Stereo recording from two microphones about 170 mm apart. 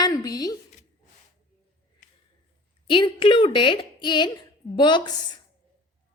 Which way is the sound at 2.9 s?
30° left (ahead or behind).